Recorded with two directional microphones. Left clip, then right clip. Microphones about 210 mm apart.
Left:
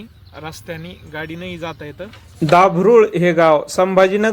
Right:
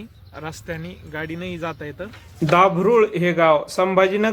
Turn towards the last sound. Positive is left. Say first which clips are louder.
# left 4 dB
turn(degrees=20)  # may be behind; listen again after turning